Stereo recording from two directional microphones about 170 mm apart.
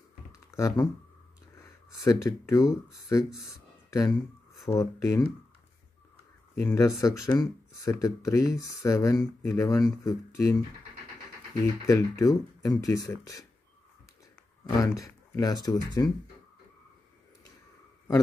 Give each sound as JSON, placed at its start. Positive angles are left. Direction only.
{"t": 0.5, "sound": "speech", "side_deg": 20}
{"t": 2.0, "sound": "speech", "side_deg": 20}
{"t": 6.5, "sound": "speech", "side_deg": 15}
{"t": 11.8, "sound": "speech", "side_deg": 20}
{"t": 14.8, "sound": "speech", "side_deg": 20}